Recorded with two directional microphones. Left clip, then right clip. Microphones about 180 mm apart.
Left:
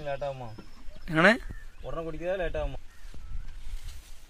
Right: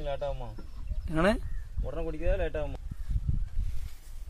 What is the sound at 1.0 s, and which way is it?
Speech, 5° right (ahead or behind).